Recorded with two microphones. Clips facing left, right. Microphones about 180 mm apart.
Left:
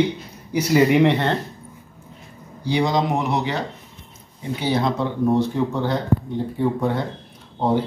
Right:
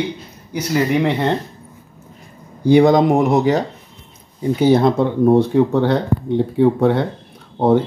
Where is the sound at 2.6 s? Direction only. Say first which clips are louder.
Right 9 dB; 55° right (ahead or behind).